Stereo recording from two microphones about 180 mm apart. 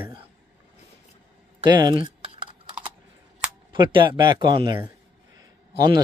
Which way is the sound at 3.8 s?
25° right (ahead or behind).